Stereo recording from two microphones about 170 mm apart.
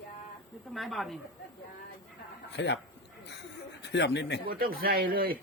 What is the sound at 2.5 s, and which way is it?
Speech, 90° left.